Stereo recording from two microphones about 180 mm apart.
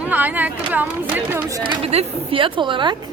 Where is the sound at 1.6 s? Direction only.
30° right (ahead or behind).